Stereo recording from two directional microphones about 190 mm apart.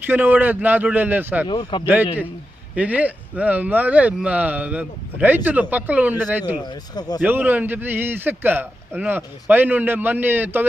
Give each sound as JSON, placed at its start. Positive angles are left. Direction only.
{"t": 0.0, "sound": "a man's voice", "side_deg": -10}
{"t": 1.5, "sound": "speech", "side_deg": 25}
{"t": 2.7, "sound": "a man's voice", "side_deg": -10}
{"t": 6.7, "sound": "speech", "side_deg": 20}
{"t": 7.2, "sound": "a man's voice", "side_deg": -10}